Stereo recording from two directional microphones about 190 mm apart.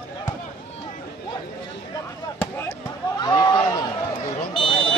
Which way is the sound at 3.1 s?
20° left (ahead or behind).